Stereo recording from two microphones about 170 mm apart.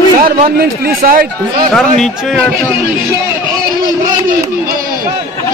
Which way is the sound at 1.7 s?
Centre (ahead or behind).